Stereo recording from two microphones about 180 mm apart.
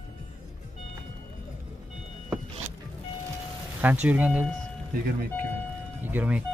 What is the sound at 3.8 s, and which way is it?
Speech, 10° right (ahead or behind).